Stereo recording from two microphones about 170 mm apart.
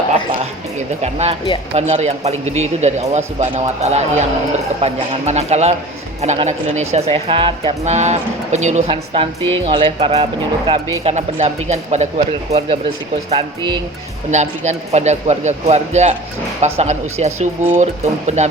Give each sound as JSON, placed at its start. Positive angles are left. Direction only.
{"t": 1.0, "sound": "speech", "side_deg": -40}
{"t": 14.3, "sound": "speech", "side_deg": -45}